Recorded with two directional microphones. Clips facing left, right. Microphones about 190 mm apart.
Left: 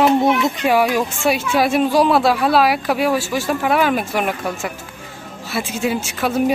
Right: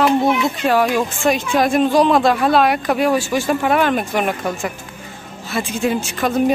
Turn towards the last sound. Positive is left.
turn(degrees=5)  # may be behind; listen again after turning